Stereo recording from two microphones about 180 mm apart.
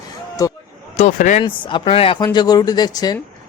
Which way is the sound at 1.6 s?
30° left (ahead or behind).